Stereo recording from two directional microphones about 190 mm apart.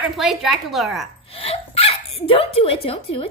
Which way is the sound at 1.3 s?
30° left (ahead or behind).